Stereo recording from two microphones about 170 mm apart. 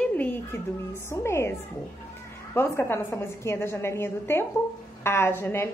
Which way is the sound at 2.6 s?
15° left (ahead or behind).